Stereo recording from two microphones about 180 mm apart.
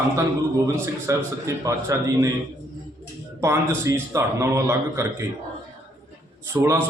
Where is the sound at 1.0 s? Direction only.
15° right (ahead or behind).